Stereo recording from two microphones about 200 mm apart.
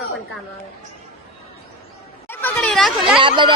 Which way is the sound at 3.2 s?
25° right (ahead or behind).